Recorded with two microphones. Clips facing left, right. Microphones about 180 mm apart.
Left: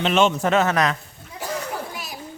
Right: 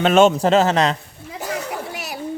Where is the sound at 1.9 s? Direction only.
70° right (ahead or behind).